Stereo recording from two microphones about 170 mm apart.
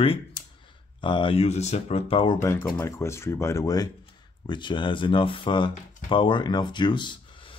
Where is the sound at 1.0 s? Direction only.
30° left (ahead or behind).